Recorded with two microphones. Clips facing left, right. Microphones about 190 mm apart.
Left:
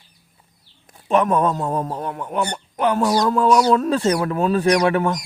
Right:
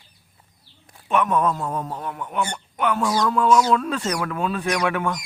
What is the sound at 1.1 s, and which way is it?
A man's voice, 35° left (ahead or behind).